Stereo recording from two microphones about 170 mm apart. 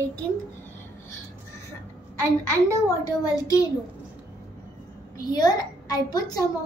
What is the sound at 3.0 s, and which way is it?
Speech, 20° left (ahead or behind).